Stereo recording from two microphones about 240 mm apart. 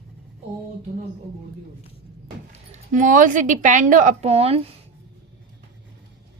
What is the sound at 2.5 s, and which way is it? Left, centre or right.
Speech, right.